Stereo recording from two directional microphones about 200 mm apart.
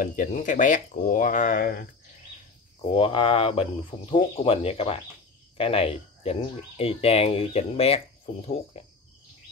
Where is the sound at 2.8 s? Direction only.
25° left (ahead or behind).